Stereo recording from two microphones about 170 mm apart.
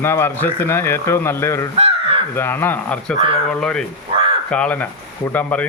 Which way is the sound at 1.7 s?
35° right (ahead or behind).